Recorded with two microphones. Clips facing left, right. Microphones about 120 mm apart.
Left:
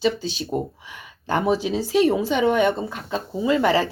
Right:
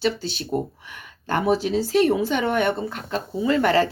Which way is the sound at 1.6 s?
15° left (ahead or behind).